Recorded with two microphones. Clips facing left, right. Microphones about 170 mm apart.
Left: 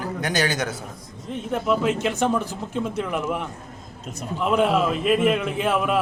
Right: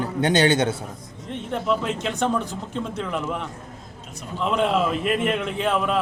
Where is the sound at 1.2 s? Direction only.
5° left (ahead or behind).